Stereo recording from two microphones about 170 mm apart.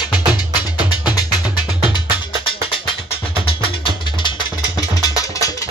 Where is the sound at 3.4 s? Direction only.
30° left (ahead or behind).